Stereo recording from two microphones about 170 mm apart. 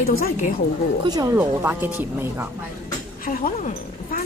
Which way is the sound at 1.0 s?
25° right (ahead or behind).